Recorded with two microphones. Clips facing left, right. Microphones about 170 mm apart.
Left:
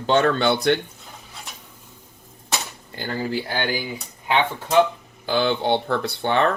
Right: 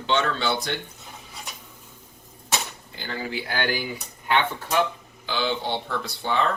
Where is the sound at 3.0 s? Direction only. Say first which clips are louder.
Left 6 dB; 45° left (ahead or behind).